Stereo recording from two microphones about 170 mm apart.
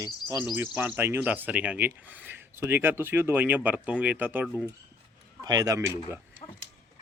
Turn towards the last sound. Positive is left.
turn(degrees=-20)  # may be behind; listen again after turning